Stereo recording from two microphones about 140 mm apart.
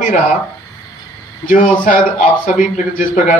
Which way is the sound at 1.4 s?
75° left (ahead or behind).